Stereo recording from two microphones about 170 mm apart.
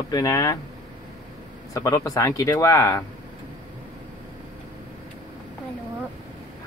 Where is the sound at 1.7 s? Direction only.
20° left (ahead or behind).